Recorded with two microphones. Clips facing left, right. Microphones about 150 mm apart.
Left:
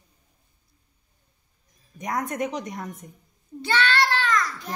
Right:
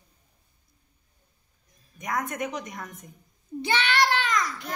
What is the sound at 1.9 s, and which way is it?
Speech, 35° left (ahead or behind).